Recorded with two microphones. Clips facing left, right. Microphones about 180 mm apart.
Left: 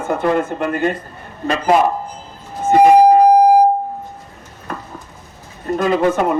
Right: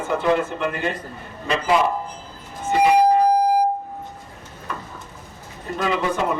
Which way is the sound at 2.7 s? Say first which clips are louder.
Left 7 dB; 50° left (ahead or behind).